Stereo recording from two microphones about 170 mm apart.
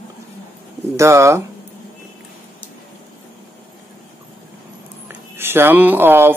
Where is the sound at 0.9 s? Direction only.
15° right (ahead or behind).